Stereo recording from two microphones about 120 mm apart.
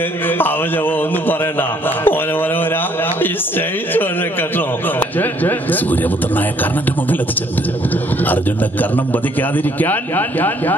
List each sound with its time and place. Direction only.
0.3 s a man's voice: 15° left (ahead or behind)
8.9 s a man's voice: 15° left (ahead or behind)